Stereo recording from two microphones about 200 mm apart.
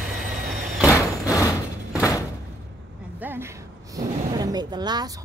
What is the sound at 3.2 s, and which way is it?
A woman's voice, 10° right (ahead or behind).